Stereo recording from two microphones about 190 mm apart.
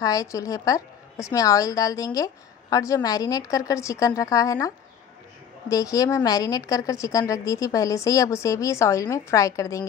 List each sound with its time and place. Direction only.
0.0 s a woman's voice: 20° left (ahead or behind)